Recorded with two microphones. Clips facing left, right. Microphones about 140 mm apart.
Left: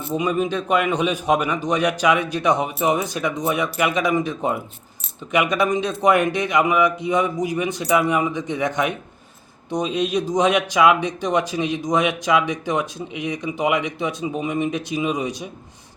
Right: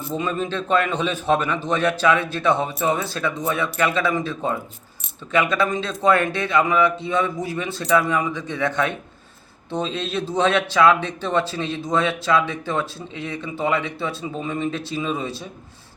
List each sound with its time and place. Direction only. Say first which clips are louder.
0.1 s speech: left 4 dB; 15° left (ahead or behind)